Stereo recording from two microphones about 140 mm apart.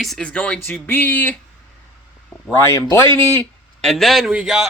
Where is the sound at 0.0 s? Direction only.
5° left (ahead or behind).